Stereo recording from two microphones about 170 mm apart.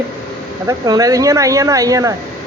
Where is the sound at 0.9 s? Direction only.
20° right (ahead or behind).